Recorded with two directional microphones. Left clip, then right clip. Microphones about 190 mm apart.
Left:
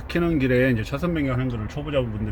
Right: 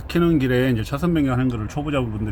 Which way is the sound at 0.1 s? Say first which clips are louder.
Right 2 dB; 15° right (ahead or behind).